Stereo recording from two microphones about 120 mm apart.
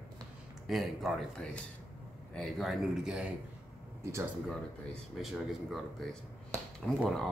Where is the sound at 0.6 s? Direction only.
Centre (ahead or behind).